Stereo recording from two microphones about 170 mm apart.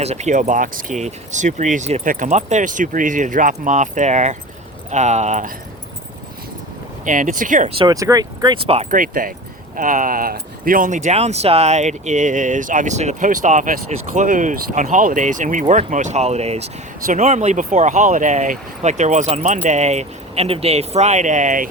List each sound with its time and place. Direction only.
0.0 s speech: 40° right (ahead or behind)
7.0 s speech: 50° right (ahead or behind)
7.8 s speech: 20° right (ahead or behind)
8.6 s speech: 35° right (ahead or behind)
8.9 s speech: 55° right (ahead or behind)